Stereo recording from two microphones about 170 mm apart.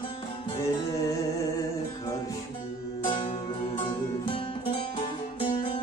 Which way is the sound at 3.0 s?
30° left (ahead or behind).